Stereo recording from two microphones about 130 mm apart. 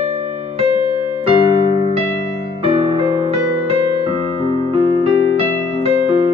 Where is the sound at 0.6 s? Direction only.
50° right (ahead or behind).